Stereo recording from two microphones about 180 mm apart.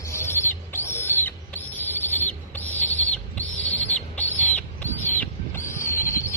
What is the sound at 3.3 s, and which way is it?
Rodents, 40° left (ahead or behind).